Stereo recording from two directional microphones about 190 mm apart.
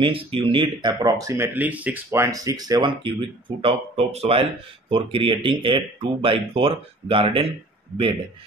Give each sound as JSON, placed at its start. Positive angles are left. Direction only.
{"t": 0.0, "sound": "speech", "side_deg": -30}